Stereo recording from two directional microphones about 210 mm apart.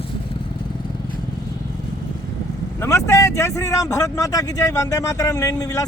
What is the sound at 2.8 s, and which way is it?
Speech, 15° left (ahead or behind).